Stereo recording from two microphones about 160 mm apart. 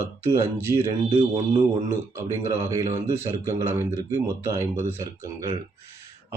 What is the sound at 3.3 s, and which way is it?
Speech, 15° right (ahead or behind).